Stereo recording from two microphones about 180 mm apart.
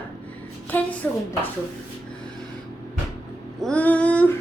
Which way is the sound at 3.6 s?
5° left (ahead or behind).